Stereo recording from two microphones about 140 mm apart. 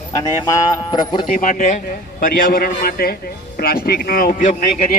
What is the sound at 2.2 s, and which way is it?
Speech, 85° left.